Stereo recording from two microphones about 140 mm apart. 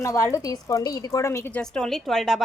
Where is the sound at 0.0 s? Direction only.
20° left (ahead or behind).